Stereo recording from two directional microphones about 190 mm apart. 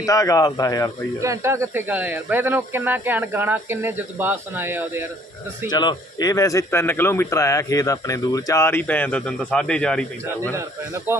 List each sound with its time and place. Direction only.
0.0 s a man's voice: 15° left (ahead or behind)
1.2 s speech: 15° right (ahead or behind)
5.7 s a man's voice: 20° left (ahead or behind); by 10.5 s 5° left (ahead or behind)
10.5 s speech: 15° right (ahead or behind)